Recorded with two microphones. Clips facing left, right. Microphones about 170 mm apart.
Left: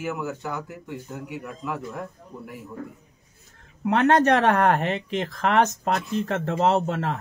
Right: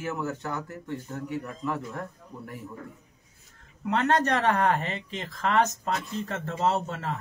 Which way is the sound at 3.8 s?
60° left (ahead or behind).